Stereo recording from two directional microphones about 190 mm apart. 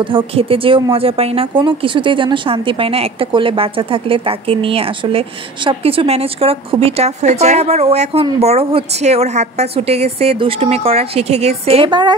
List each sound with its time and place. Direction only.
0.0 s a woman's voice: 30° right (ahead or behind)